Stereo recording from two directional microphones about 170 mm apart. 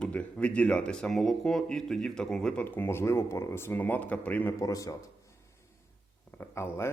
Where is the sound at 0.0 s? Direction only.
5° left (ahead or behind).